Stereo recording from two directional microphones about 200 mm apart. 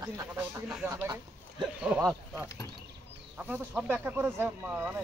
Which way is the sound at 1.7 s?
5° right (ahead or behind).